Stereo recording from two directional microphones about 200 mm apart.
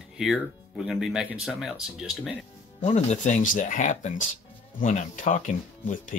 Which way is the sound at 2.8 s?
35° left (ahead or behind).